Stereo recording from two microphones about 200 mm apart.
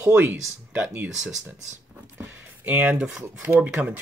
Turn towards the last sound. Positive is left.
turn(degrees=-5)  # may be behind; listen again after turning